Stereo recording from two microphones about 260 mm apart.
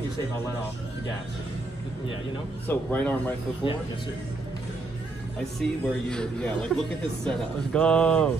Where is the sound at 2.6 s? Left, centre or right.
Centre.